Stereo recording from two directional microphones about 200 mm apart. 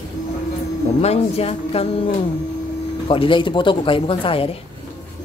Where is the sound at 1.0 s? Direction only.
30° left (ahead or behind).